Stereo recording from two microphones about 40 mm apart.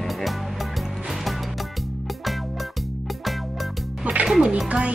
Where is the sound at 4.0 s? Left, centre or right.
Right.